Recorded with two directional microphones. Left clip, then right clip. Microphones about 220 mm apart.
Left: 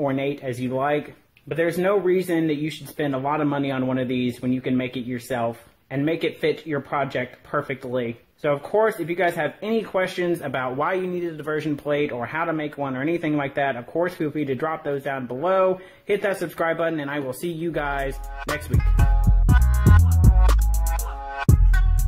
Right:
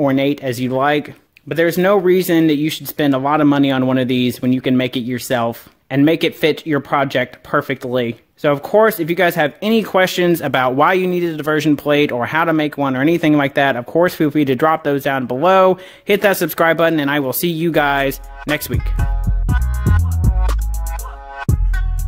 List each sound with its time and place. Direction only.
0.0 s speech: 40° right (ahead or behind)
18.4 s music: centre (ahead or behind)